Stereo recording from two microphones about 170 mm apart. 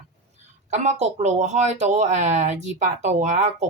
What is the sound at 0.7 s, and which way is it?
Speech, 45° right (ahead or behind).